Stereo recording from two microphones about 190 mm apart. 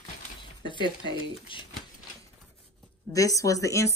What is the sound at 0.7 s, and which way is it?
Speech, 25° left (ahead or behind).